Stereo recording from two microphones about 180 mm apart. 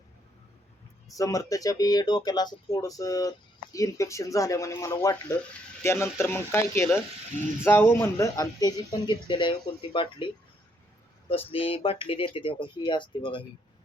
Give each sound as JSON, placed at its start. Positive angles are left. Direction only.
{"t": 1.1, "sound": "speech", "side_deg": 20}